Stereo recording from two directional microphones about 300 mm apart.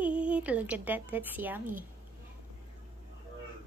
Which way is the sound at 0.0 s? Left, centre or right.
Centre.